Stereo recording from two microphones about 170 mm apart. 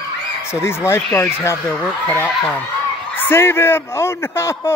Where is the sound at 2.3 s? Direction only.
Centre (ahead or behind).